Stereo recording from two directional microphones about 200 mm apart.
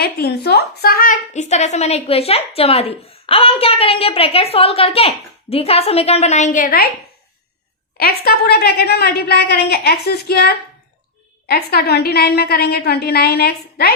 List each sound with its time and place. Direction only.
0.0 s a woman's voice: 50° left (ahead or behind)
7.9 s a woman's voice: 50° left (ahead or behind)